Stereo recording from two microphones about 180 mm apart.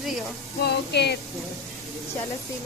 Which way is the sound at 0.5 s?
65° left (ahead or behind).